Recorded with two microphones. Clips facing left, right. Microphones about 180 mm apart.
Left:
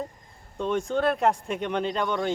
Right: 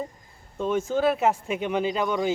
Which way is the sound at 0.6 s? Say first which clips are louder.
Right 2 dB; 5° right (ahead or behind).